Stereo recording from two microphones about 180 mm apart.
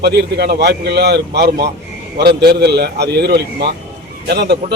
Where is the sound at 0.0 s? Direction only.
65° right (ahead or behind).